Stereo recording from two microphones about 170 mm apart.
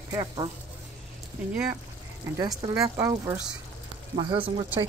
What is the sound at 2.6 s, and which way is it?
Speech, 20° right (ahead or behind).